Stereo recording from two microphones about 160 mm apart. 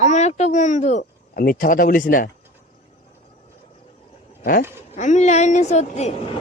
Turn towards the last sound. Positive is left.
turn(degrees=45)  # may be behind; listen again after turning